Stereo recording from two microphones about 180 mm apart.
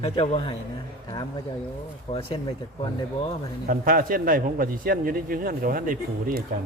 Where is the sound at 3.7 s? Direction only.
50° right (ahead or behind).